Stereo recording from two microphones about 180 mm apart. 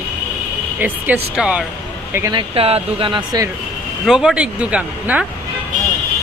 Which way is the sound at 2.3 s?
30° right (ahead or behind).